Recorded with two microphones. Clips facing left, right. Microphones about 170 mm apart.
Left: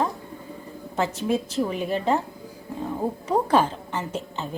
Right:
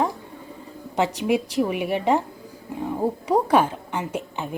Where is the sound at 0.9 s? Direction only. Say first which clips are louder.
Right 3 dB; 15° right (ahead or behind).